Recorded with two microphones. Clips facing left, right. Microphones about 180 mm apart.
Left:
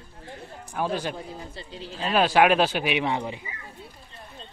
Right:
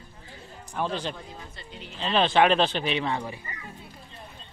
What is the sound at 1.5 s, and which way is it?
Speech, 30° left (ahead or behind).